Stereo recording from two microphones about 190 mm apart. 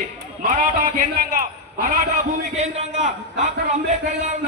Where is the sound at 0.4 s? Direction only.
45° right (ahead or behind).